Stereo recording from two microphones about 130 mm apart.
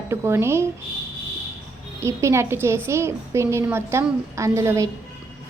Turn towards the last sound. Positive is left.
turn(degrees=-25)  # may be behind; listen again after turning